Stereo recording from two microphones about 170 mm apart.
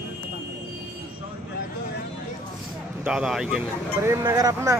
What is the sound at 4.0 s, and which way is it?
Speech, 15° right (ahead or behind).